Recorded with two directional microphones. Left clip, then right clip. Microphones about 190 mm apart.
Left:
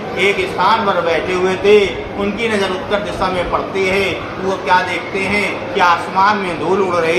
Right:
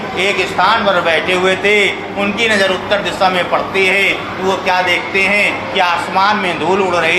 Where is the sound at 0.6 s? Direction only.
20° right (ahead or behind).